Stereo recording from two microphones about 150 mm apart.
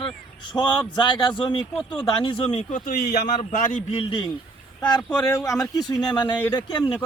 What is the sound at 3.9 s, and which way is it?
Speech, 40° left (ahead or behind).